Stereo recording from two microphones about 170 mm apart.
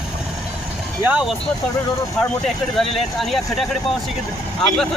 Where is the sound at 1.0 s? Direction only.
5° right (ahead or behind).